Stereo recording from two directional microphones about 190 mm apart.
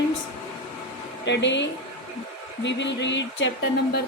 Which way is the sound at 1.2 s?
70° left (ahead or behind).